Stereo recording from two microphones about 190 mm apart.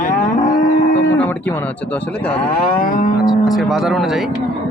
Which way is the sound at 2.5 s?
50° left (ahead or behind).